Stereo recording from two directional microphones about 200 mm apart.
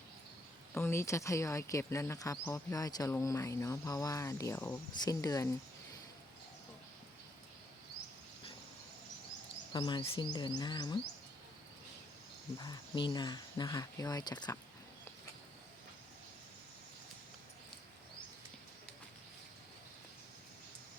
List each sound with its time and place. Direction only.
0.7 s speech: 10° left (ahead or behind)
9.7 s speech: 25° left (ahead or behind)
12.5 s speech: 20° left (ahead or behind)